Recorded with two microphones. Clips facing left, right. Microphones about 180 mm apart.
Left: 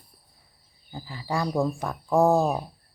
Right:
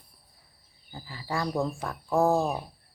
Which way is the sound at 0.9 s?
20° left (ahead or behind).